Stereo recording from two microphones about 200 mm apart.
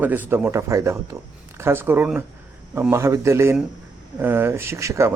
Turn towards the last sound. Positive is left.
turn(degrees=-15)  # may be behind; listen again after turning